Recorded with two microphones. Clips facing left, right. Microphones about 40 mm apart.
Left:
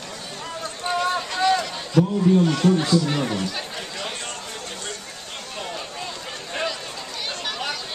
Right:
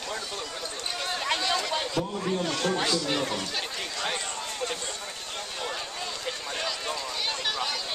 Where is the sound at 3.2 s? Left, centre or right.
Centre.